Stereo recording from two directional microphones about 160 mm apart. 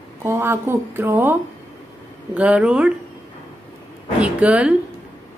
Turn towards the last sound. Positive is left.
turn(degrees=-10)  # may be behind; listen again after turning